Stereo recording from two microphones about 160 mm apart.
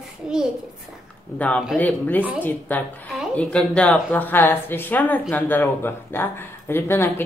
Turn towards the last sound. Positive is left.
turn(degrees=15)  # may be behind; listen again after turning